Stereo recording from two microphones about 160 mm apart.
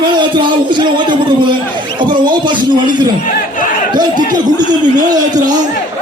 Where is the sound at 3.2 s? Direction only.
55° left (ahead or behind).